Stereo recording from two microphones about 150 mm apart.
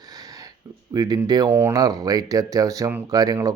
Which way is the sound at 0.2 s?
25° right (ahead or behind).